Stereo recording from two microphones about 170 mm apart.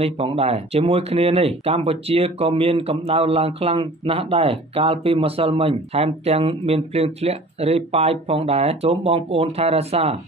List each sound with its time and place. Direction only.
0.0 s speech: 35° right (ahead or behind)